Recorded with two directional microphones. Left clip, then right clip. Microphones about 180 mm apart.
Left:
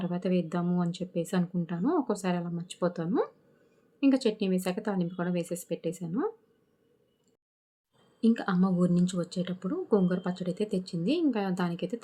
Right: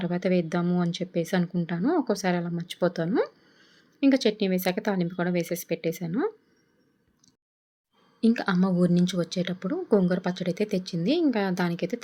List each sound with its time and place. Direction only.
0.0 s a woman's voice: 15° right (ahead or behind)
8.2 s a woman's voice: 15° right (ahead or behind)